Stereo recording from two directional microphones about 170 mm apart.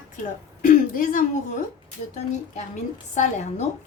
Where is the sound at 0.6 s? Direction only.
50° left (ahead or behind).